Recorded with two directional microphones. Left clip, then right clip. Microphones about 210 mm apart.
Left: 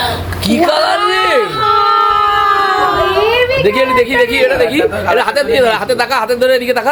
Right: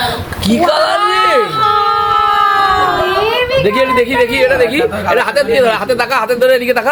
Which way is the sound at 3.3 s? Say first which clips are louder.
Left 1 dB; 10° left (ahead or behind).